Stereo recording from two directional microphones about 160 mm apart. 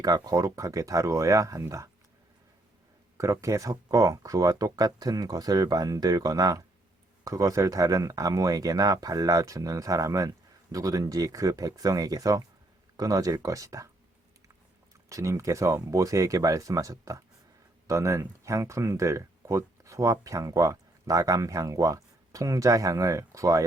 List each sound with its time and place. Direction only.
0.0 s speech: 20° right (ahead or behind)
3.2 s speech: 20° right (ahead or behind)
15.1 s speech: 20° right (ahead or behind)